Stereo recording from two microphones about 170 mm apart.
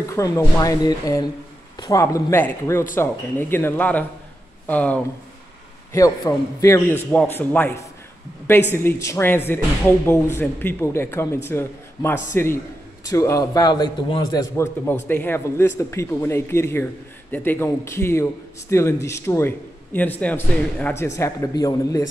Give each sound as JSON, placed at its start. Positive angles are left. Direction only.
{"t": 0.1, "sound": "a man's voice", "side_deg": 20}
{"t": 14.9, "sound": "a man's voice", "side_deg": 10}